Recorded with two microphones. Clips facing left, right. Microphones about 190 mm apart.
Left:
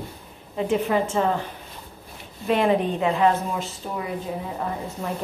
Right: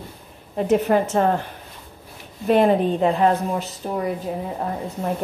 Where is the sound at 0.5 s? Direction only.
45° right (ahead or behind).